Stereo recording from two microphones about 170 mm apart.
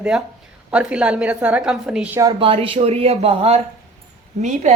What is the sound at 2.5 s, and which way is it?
A woman's voice, 35° right (ahead or behind).